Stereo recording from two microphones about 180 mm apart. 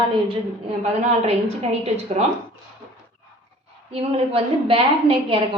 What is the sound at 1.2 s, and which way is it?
A woman's voice, 35° right (ahead or behind).